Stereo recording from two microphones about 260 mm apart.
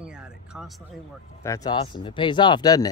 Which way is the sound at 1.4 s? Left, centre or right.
Centre.